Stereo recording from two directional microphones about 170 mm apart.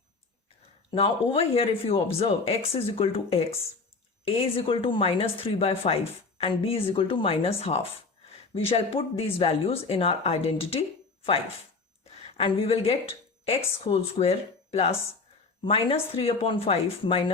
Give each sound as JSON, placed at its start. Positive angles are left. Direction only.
{"t": 0.9, "sound": "speech", "side_deg": 30}
{"t": 4.5, "sound": "speech", "side_deg": 30}
{"t": 12.4, "sound": "speech", "side_deg": 35}